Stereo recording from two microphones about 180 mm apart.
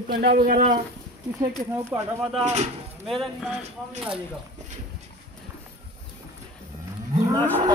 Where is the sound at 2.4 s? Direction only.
40° right (ahead or behind).